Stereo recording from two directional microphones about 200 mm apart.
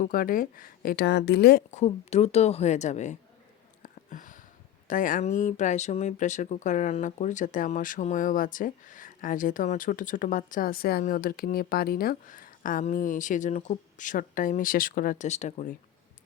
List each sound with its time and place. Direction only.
0.0 s a woman's voice: 45° left (ahead or behind)
1.7 s speech: 35° left (ahead or behind)
3.8 s a sound: 40° left (ahead or behind)
4.9 s speech: 40° left (ahead or behind)